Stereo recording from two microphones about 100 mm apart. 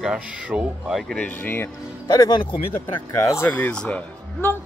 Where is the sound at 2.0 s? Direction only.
45° left (ahead or behind).